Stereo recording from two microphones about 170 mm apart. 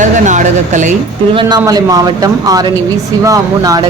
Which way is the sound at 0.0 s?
45° right (ahead or behind).